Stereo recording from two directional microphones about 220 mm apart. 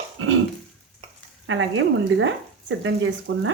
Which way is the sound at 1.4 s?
60° right (ahead or behind).